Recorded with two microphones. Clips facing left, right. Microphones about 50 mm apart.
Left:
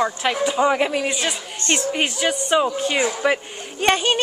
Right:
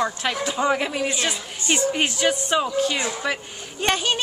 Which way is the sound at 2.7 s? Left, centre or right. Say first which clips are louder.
Left 2 dB; left.